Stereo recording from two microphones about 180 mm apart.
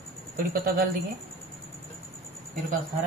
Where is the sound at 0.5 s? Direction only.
55° right (ahead or behind).